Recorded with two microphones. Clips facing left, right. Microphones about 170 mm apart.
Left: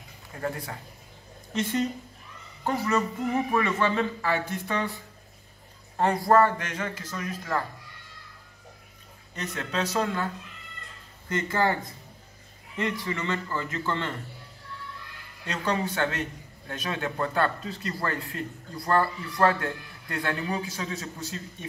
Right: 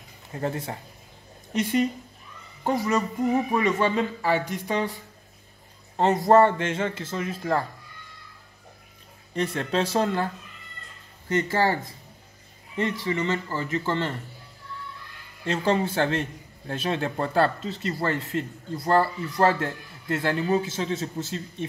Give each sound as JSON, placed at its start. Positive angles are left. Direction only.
{"t": 0.3, "sound": "a man's voice", "side_deg": -25}
{"t": 1.5, "sound": "speech", "side_deg": -15}
{"t": 5.9, "sound": "a man's voice", "side_deg": -20}
{"t": 9.3, "sound": "a man's voice", "side_deg": -30}
{"t": 12.7, "sound": "a man's voice", "side_deg": -25}
{"t": 15.4, "sound": "a man's voice", "side_deg": -25}